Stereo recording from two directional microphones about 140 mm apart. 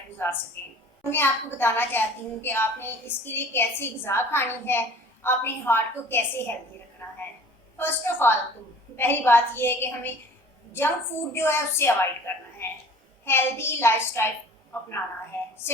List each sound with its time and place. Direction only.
0.2 s a woman's voice: 15° left (ahead or behind)
7.0 s a sound: 15° left (ahead or behind)
7.8 s a woman's voice: 15° left (ahead or behind)